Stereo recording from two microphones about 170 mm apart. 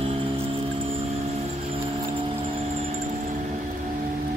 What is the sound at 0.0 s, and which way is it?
Music, 30° right (ahead or behind).